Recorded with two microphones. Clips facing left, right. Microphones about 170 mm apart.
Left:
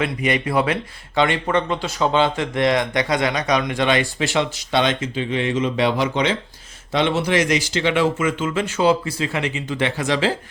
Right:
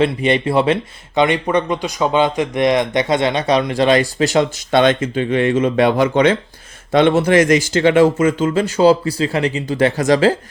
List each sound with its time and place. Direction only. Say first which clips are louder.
0.0 s speech: right 6 dB; 30° right (ahead or behind)